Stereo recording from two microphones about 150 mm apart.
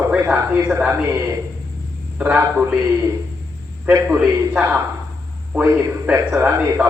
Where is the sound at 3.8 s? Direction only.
10° right (ahead or behind).